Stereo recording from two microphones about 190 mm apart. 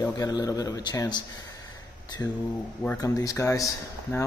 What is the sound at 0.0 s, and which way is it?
Speech, 20° left (ahead or behind).